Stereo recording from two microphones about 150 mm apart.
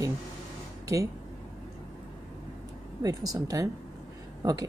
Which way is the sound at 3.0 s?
25° right (ahead or behind).